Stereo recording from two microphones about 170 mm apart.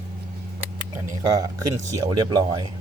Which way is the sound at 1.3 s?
20° right (ahead or behind).